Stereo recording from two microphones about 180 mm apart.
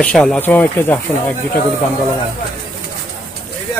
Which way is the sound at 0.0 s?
5° left (ahead or behind).